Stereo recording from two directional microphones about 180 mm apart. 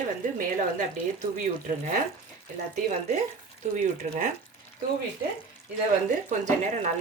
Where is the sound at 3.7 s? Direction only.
45° right (ahead or behind).